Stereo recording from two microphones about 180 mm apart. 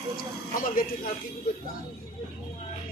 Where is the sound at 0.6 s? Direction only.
50° left (ahead or behind).